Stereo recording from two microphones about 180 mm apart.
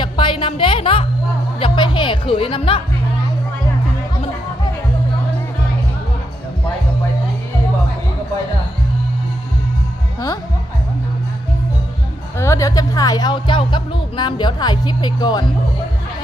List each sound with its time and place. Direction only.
0.0 s music: 25° left (ahead or behind)
1.5 s speech: 30° left (ahead or behind)
12.4 s speech: 15° left (ahead or behind)